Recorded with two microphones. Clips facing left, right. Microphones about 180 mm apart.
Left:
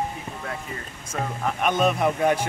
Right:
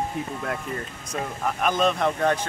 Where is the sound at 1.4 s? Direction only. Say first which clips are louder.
Left 1 dB; centre (ahead or behind).